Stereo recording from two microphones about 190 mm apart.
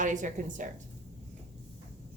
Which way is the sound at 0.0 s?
40° right (ahead or behind).